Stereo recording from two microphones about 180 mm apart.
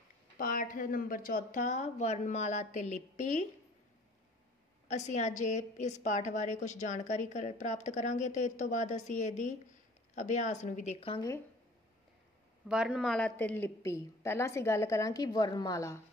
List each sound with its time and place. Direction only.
0.4 s speech: 50° left (ahead or behind)
4.8 s a woman's voice: 40° left (ahead or behind)
11.1 s a woman's voice: 15° left (ahead or behind)
12.6 s a woman's voice: 5° right (ahead or behind); by 16.0 s 20° left (ahead or behind)